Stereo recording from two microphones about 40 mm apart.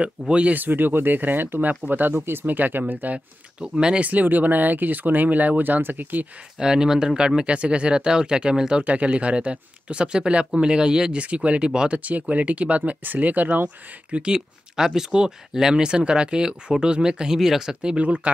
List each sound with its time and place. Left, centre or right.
0.3 s speech: right
0.6 s speech: right
2.4 s speech: right
3.5 s speech: right
4.0 s speech: right
6.6 s speech: centre
8.8 s speech: right
11.1 s speech: right
12.0 s speech: right
14.1 s speech: right
17.9 s speech: right